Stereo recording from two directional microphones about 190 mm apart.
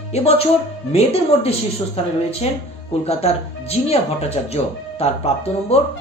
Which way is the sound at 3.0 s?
35° left (ahead or behind).